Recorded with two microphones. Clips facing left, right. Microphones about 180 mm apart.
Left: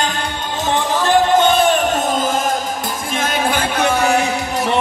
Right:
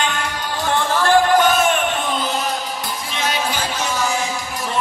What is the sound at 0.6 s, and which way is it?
Music, 15° left (ahead or behind).